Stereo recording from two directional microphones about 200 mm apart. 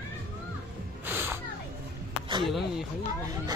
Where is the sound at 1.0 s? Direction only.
10° right (ahead or behind).